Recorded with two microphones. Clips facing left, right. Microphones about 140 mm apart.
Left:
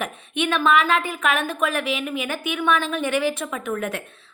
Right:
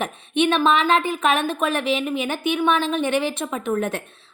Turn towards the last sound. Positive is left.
turn(degrees=-30)  # may be behind; listen again after turning